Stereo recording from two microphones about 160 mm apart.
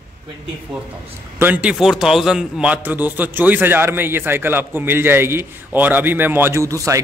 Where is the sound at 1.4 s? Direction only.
10° right (ahead or behind).